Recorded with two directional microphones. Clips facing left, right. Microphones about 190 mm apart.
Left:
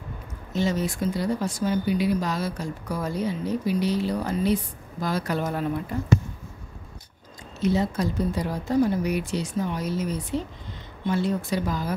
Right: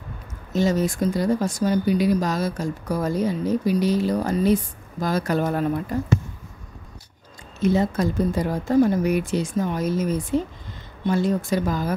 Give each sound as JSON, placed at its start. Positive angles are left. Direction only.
{"t": 0.5, "sound": "speech", "side_deg": -45}
{"t": 7.6, "sound": "speech", "side_deg": -50}